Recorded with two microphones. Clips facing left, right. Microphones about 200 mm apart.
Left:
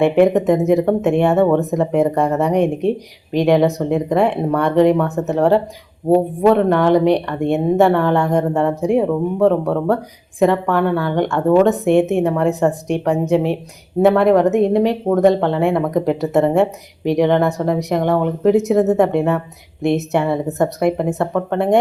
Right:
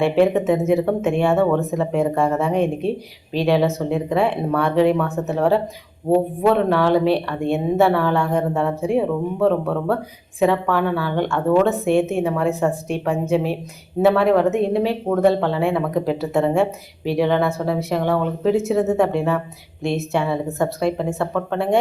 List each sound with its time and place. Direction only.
0.0 s speech: 15° left (ahead or behind)